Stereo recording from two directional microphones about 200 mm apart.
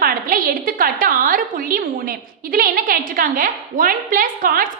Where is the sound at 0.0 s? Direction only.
45° right (ahead or behind).